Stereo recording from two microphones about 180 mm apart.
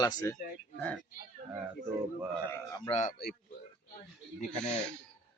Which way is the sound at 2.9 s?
40° left (ahead or behind).